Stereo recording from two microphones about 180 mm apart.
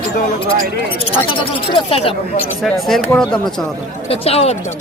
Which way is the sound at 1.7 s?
30° left (ahead or behind).